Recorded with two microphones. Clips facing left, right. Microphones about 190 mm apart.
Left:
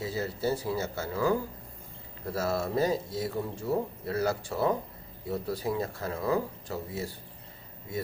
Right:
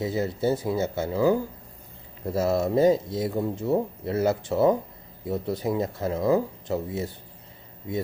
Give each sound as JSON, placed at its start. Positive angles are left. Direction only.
{"t": 0.0, "sound": "speech", "side_deg": -20}